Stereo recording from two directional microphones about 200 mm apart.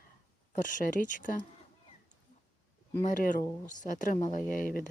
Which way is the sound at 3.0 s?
40° left (ahead or behind).